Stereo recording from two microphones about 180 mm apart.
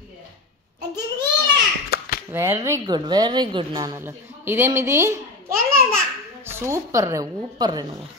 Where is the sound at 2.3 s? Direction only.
15° right (ahead or behind).